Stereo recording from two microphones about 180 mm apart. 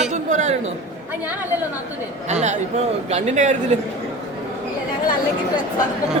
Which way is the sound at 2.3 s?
40° right (ahead or behind).